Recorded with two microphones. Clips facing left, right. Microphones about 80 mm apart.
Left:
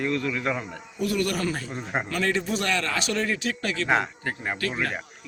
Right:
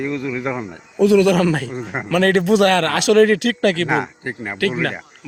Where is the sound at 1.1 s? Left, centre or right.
Right.